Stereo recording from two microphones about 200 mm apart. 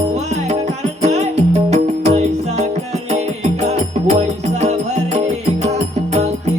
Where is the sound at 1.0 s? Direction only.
35° right (ahead or behind).